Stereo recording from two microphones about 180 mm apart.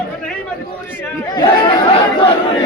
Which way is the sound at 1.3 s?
25° left (ahead or behind).